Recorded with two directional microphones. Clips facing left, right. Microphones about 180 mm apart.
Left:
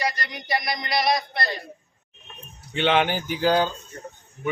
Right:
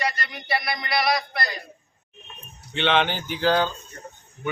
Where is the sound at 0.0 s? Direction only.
15° left (ahead or behind).